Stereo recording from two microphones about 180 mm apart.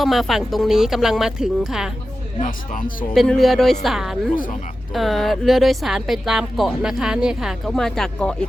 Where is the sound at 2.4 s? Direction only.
50° left (ahead or behind).